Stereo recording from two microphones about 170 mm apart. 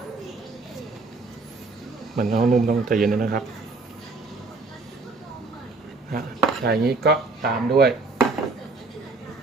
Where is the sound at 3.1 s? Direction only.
60° right (ahead or behind).